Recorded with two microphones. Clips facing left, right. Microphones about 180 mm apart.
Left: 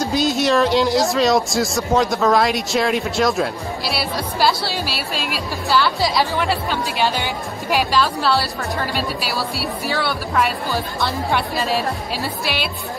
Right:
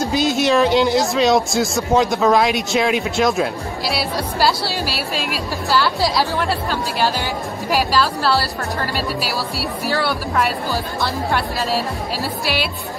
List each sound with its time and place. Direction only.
0.1 s speech: centre (ahead or behind)
5.1 s speech: 45° right (ahead or behind)
5.7 s speech: 5° right (ahead or behind)
9.8 s speech: 5° right (ahead or behind)